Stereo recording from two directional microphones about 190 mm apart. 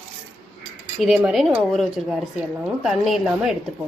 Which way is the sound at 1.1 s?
Centre (ahead or behind).